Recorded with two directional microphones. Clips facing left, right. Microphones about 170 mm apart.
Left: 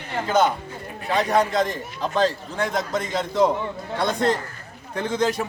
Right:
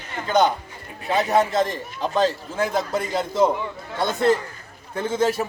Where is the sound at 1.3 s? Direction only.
Centre (ahead or behind).